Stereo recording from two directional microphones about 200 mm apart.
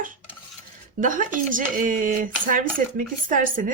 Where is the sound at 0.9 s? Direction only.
40° right (ahead or behind).